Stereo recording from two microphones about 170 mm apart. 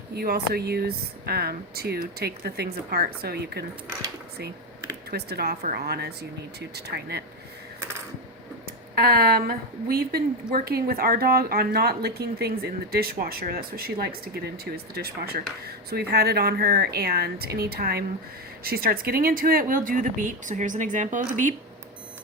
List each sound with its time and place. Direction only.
0.1 s speech: 70° right (ahead or behind)
5.1 s speech: 70° right (ahead or behind)
9.0 s a woman's voice: 60° right (ahead or behind)